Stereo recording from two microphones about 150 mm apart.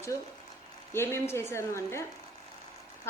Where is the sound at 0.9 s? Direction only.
15° left (ahead or behind).